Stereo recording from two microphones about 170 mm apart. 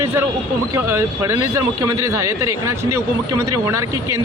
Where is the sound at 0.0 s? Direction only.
15° right (ahead or behind).